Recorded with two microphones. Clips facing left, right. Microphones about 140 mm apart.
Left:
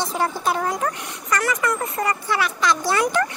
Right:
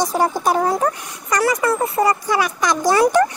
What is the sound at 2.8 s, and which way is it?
Speech, 40° right (ahead or behind).